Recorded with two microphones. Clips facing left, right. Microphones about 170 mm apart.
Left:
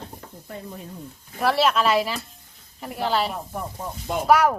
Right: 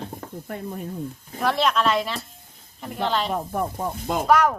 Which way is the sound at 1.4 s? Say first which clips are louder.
Left 1 dB; 5° left (ahead or behind).